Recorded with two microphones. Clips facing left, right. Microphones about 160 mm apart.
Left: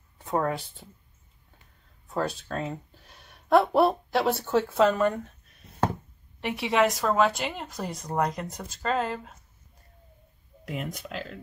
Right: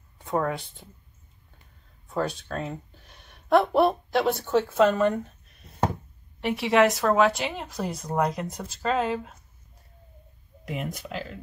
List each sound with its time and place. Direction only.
0.2 s speech: 5° left (ahead or behind)
2.0 s a woman's voice: centre (ahead or behind)
6.4 s a woman's voice: centre (ahead or behind)
10.7 s a woman's voice: 5° right (ahead or behind)